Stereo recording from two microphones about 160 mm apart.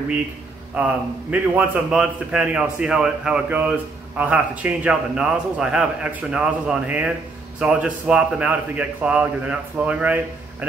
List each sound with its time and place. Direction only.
0.7 s a man's voice: 10° right (ahead or behind)